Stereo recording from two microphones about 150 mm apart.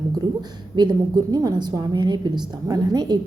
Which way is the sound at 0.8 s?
30° right (ahead or behind).